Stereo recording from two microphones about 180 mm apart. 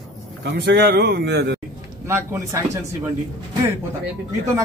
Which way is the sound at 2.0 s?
15° right (ahead or behind).